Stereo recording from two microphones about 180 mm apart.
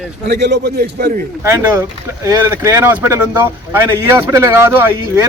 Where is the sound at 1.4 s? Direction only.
15° right (ahead or behind).